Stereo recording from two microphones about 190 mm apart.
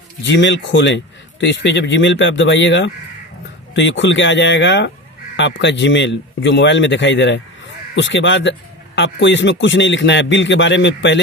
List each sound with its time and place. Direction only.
0.2 s speech: 70° left (ahead or behind)